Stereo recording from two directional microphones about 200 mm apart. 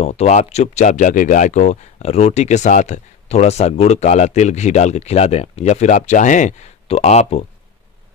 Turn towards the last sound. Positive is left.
turn(degrees=35)  # may be behind; listen again after turning